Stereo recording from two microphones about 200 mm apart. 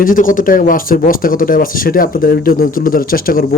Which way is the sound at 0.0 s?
45° left (ahead or behind).